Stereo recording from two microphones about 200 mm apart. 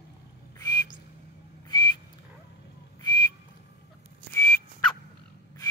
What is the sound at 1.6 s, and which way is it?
Whistle, 20° left (ahead or behind).